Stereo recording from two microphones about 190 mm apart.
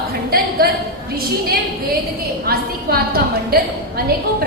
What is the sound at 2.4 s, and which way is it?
A woman's voice, 55° right (ahead or behind).